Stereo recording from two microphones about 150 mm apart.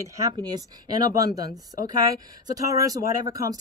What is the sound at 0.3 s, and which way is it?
Speech, 25° right (ahead or behind).